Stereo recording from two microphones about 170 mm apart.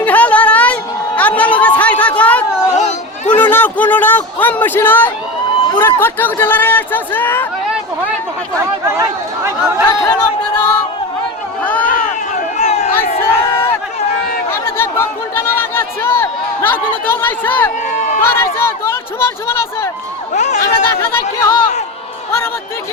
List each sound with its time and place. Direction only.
0.0 s a sound: 10° left (ahead or behind)
3.3 s speech: 10° left (ahead or behind)
8.9 s speech: 15° right (ahead or behind)
9.9 s speech: 20° left (ahead or behind)
11.6 s a sound: 10° left (ahead or behind)
12.5 s a sound: 40° left (ahead or behind)
13.2 s crowd: 15° left (ahead or behind)
14.5 s speech: 15° left (ahead or behind)
20.3 s speech: 45° left (ahead or behind)
20.6 s speech: 20° left (ahead or behind)